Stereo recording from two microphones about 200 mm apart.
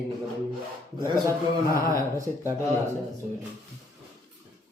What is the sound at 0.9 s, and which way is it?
A man's voice, 20° right (ahead or behind).